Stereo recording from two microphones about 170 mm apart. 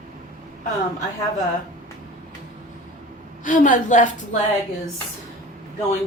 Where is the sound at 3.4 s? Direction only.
50° left (ahead or behind).